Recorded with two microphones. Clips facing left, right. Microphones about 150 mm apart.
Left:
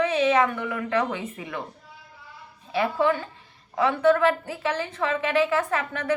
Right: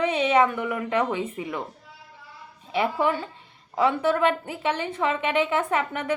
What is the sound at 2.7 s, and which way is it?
A woman's voice, 25° right (ahead or behind).